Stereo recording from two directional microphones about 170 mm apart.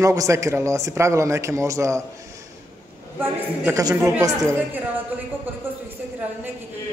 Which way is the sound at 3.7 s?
20° right (ahead or behind).